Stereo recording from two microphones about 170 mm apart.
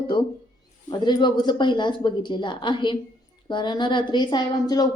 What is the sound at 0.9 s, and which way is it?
A woman's voice, 25° left (ahead or behind).